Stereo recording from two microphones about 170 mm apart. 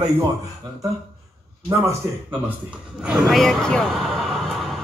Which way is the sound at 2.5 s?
5° right (ahead or behind).